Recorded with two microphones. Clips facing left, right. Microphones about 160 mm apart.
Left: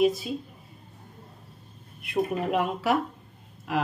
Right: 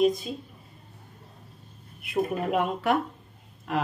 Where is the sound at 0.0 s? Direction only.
5° left (ahead or behind).